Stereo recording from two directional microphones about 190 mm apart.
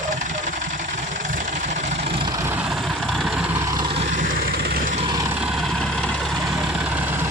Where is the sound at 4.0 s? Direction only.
40° right (ahead or behind).